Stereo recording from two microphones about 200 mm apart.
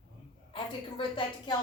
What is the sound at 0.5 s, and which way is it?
A woman's voice, 25° left (ahead or behind).